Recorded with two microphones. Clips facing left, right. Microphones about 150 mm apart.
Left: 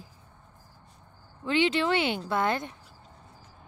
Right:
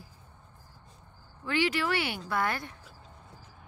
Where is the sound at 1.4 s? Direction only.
20° left (ahead or behind).